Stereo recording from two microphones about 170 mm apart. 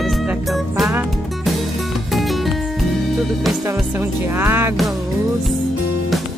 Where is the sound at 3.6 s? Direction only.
15° right (ahead or behind).